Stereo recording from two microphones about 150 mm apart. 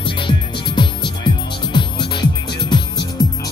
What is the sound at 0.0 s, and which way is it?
Music, 35° left (ahead or behind).